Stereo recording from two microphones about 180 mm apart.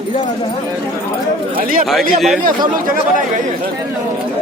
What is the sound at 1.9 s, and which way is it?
Speech, centre (ahead or behind).